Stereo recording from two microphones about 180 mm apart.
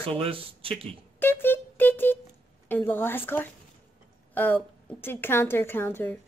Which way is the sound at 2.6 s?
10° left (ahead or behind).